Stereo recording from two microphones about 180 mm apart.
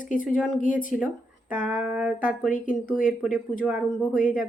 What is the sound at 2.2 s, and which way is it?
Speech, 45° left (ahead or behind).